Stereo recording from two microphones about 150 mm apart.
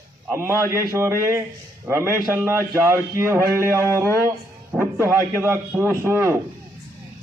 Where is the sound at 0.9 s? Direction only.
20° right (ahead or behind).